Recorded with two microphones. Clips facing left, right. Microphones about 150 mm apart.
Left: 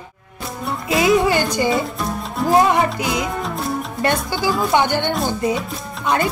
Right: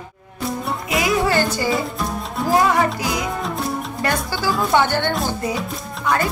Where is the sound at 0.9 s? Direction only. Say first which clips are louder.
Left 4 dB; 25° left (ahead or behind).